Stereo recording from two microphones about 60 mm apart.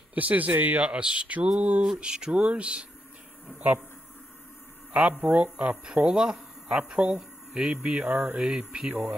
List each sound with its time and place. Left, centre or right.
0.1 s speech: right
0.8 s speech: centre
4.9 s speech: centre
8.1 s speech: right
8.4 s speech: centre